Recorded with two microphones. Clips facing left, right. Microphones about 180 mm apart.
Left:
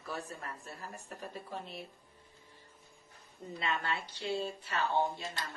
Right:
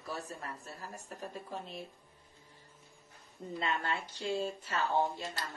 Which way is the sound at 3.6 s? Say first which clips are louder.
Right 1 dB; 45° right (ahead or behind).